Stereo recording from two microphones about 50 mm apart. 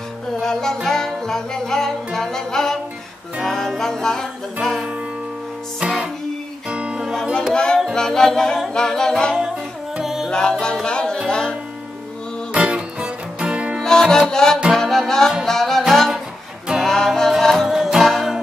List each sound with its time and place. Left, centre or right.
0.4 s music: centre
5.8 s music: centre
7.5 s music: centre
9.9 s music: centre
10.3 s music: centre
12.5 s music: right
14.0 s music: centre
14.3 s music: centre
15.9 s a sound: centre
16.8 s music: centre
17.6 s music: centre